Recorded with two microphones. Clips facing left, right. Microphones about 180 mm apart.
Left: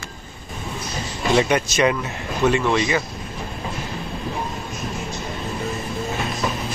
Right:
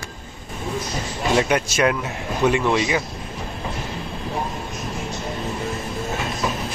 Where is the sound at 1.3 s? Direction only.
10° right (ahead or behind).